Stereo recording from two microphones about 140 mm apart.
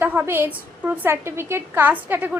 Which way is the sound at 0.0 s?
15° right (ahead or behind).